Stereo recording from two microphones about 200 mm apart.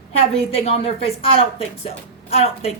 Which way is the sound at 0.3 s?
30° left (ahead or behind).